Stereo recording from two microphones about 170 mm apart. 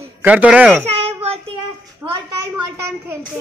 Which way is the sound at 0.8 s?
35° right (ahead or behind).